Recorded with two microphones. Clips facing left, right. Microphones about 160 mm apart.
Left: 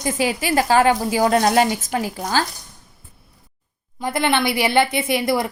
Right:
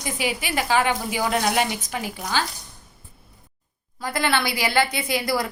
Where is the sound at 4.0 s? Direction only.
20° left (ahead or behind).